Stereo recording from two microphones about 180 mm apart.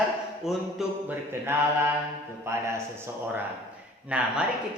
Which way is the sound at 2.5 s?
15° right (ahead or behind).